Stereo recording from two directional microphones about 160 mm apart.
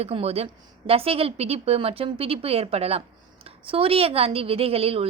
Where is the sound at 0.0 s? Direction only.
40° right (ahead or behind).